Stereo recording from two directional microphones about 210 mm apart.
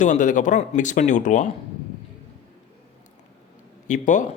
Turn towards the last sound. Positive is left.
turn(degrees=35)  # may be behind; listen again after turning